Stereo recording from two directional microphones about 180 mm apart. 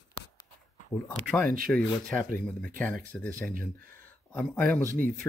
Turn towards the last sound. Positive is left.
turn(degrees=5)  # may be behind; listen again after turning